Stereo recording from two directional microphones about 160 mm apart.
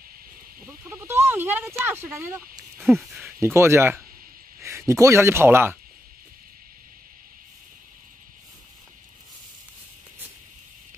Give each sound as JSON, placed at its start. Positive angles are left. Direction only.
{"t": 0.7, "sound": "a sound", "side_deg": -15}
{"t": 2.0, "sound": "speech", "side_deg": -15}
{"t": 2.8, "sound": "speech", "side_deg": 0}
{"t": 3.3, "sound": "speech", "side_deg": -15}